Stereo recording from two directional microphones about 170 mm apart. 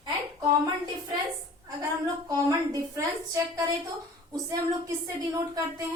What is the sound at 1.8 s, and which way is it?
A woman's voice, 20° right (ahead or behind).